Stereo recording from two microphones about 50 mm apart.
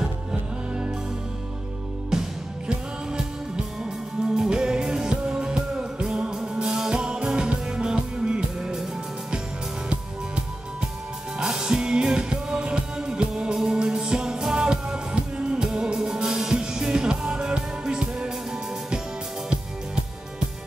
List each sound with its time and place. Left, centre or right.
0.3 s music: centre
3.1 s music: centre
11.4 s music: centre